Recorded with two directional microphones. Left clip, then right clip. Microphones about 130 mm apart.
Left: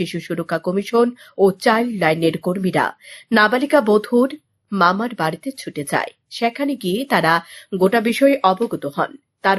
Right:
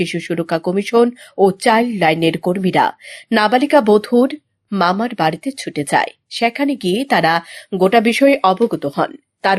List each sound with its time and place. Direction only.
0.0 s speech: 20° right (ahead or behind)